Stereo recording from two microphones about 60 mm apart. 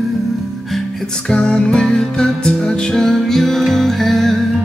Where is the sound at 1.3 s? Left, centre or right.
Centre.